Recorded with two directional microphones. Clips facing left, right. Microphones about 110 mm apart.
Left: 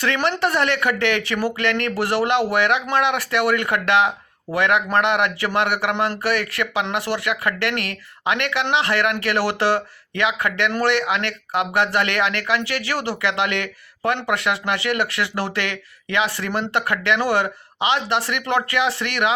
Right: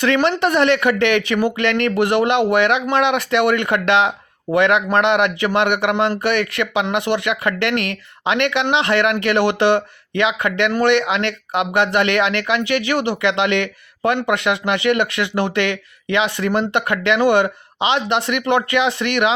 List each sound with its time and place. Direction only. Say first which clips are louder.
0.0 s speech: right 4 dB; 20° right (ahead or behind)